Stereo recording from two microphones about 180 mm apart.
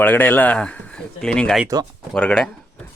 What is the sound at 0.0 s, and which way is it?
Speech, 10° left (ahead or behind).